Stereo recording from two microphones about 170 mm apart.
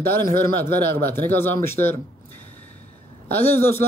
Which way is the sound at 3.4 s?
10° left (ahead or behind).